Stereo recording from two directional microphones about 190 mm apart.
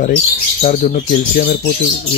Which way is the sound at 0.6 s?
40° left (ahead or behind).